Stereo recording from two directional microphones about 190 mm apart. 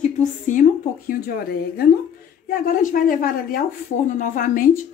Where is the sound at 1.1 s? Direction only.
55° left (ahead or behind).